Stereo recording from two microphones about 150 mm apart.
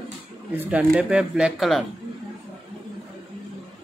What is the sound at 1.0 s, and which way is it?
Speech, 5° right (ahead or behind).